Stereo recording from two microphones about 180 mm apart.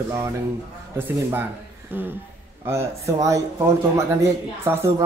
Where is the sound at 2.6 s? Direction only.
15° right (ahead or behind).